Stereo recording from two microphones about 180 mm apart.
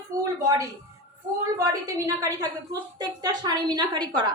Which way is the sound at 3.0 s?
20° right (ahead or behind).